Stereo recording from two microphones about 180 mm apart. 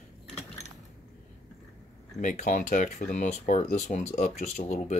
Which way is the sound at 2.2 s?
45° left (ahead or behind).